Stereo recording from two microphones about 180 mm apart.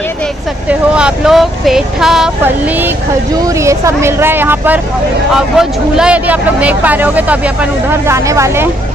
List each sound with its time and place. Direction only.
0.7 s speech: 5° right (ahead or behind)